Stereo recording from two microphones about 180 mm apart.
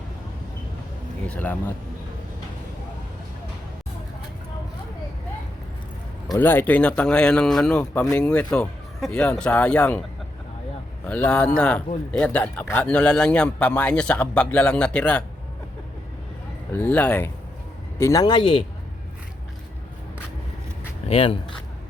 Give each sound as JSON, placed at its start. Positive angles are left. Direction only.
{"t": 1.3, "sound": "a man's voice", "side_deg": 10}
{"t": 6.3, "sound": "a man's voice", "side_deg": 10}
{"t": 11.0, "sound": "a man's voice", "side_deg": 10}
{"t": 16.7, "sound": "a man's voice", "side_deg": 10}
{"t": 21.1, "sound": "speech", "side_deg": 30}